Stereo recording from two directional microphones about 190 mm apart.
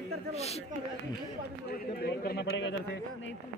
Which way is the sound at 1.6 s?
55° left (ahead or behind).